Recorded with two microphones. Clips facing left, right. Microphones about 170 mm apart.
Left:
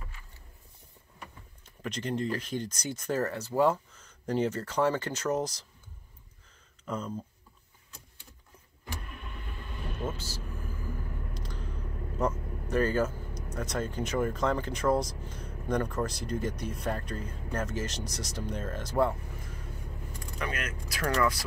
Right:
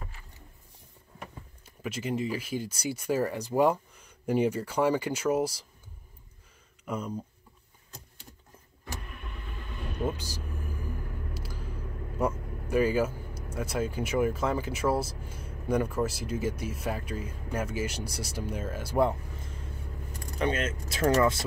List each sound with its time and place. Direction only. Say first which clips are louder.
1.8 s speech: right 1 dB; 5° right (ahead or behind)
6.8 s speech: right 1 dB; 10° right (ahead or behind)
10.0 s vehicle: right 5 dB; 15° right (ahead or behind)
12.2 s speech: right 1 dB; 10° right (ahead or behind)
20.3 s speech: right 7 dB; 25° right (ahead or behind)